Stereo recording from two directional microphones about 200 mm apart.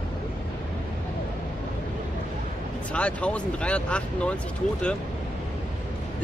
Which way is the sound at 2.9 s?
5° left (ahead or behind).